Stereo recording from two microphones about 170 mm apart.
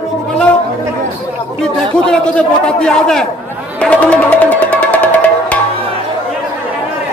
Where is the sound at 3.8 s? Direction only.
5° left (ahead or behind).